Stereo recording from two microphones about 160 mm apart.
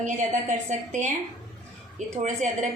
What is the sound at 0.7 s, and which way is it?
A woman's voice, 50° right (ahead or behind).